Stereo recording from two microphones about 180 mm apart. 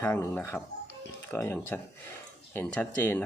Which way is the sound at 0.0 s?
10° left (ahead or behind).